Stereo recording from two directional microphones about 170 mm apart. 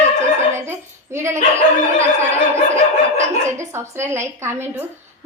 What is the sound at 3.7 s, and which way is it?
A woman's voice, 15° right (ahead or behind).